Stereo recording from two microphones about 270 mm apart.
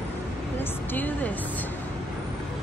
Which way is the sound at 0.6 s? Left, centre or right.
Centre.